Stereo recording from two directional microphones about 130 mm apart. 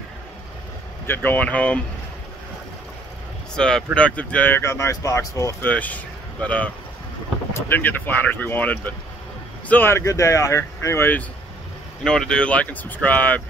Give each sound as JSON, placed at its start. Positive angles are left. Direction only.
{"t": 1.0, "sound": "speech", "side_deg": 15}
{"t": 3.5, "sound": "speech", "side_deg": 5}
{"t": 5.7, "sound": "speech", "side_deg": 10}
{"t": 12.0, "sound": "speech", "side_deg": 5}